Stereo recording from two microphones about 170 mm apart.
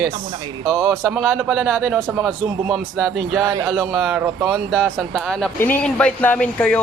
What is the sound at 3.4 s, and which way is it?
Speech, 20° right (ahead or behind).